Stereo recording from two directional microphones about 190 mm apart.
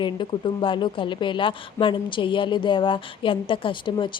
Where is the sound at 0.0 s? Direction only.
25° left (ahead or behind).